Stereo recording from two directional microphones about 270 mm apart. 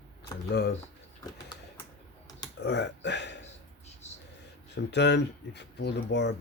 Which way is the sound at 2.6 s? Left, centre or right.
Left.